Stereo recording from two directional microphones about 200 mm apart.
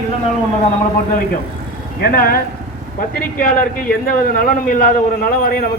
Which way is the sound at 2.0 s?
50° left (ahead or behind).